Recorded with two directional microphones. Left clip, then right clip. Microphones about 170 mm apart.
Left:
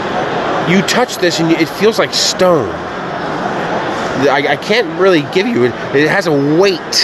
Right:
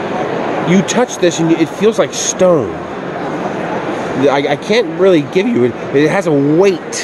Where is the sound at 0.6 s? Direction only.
20° right (ahead or behind).